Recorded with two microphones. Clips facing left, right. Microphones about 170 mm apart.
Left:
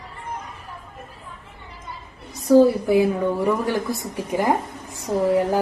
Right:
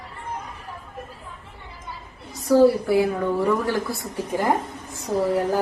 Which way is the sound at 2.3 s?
20° left (ahead or behind).